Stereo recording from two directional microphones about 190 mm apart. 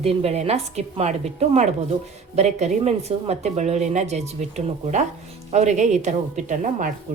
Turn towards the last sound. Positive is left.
turn(degrees=-40)  # may be behind; listen again after turning